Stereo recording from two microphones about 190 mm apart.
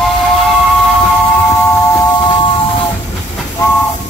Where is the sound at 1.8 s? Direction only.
20° left (ahead or behind).